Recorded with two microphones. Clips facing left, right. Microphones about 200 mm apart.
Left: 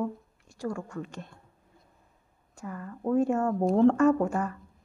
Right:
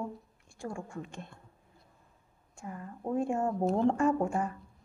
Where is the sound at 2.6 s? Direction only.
65° left (ahead or behind).